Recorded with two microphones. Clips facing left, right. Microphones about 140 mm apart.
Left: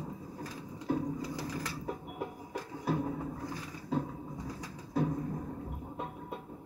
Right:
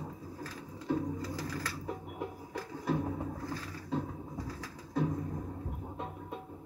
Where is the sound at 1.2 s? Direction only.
15° left (ahead or behind).